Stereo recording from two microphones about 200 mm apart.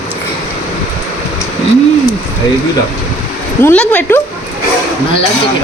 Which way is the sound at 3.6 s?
10° left (ahead or behind).